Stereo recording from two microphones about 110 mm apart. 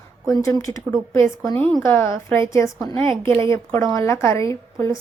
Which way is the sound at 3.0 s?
50° right (ahead or behind).